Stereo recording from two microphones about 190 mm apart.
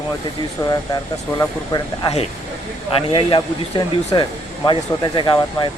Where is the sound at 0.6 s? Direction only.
20° left (ahead or behind).